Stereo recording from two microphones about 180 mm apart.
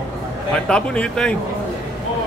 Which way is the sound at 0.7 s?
5° left (ahead or behind).